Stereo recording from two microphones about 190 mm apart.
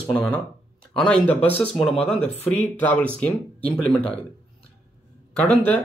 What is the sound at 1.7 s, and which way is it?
Speech, 30° left (ahead or behind).